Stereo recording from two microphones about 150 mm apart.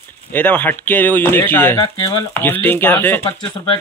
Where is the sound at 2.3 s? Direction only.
15° left (ahead or behind).